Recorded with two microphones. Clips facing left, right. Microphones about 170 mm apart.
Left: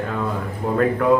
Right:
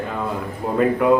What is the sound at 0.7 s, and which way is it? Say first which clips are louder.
Speech: right 2 dB; 10° right (ahead or behind).